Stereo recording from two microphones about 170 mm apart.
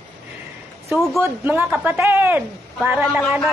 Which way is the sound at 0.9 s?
Centre (ahead or behind).